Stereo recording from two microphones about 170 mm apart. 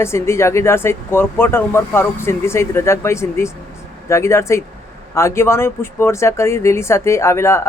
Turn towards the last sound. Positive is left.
turn(degrees=15)  # may be behind; listen again after turning